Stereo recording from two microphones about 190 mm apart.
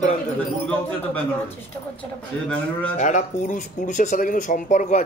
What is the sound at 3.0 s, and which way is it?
Speech, 40° left (ahead or behind).